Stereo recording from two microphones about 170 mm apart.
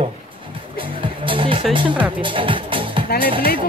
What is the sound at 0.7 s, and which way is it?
Music, 30° right (ahead or behind).